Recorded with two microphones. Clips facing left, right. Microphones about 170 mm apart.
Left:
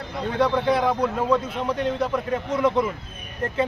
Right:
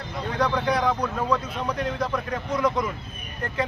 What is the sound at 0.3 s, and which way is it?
A man's voice, 25° left (ahead or behind).